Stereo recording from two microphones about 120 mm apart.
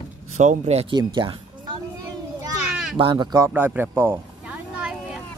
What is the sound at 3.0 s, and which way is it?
Speech, 40° right (ahead or behind).